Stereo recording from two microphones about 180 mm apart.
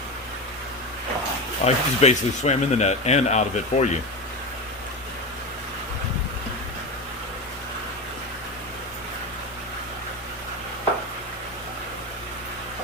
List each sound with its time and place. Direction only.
1.6 s speech: 35° left (ahead or behind)